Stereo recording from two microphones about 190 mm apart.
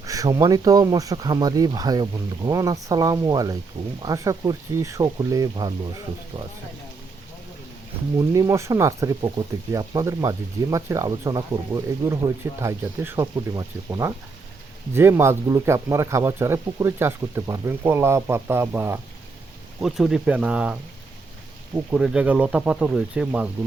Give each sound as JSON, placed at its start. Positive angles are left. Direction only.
{"t": 0.0, "sound": "speech", "side_deg": -20}
{"t": 8.3, "sound": "speech", "side_deg": -15}
{"t": 21.8, "sound": "speech", "side_deg": -5}